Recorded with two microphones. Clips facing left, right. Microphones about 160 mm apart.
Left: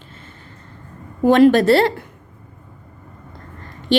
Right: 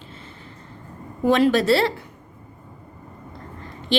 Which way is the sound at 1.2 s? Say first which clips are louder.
Left 6 dB; 50° left (ahead or behind).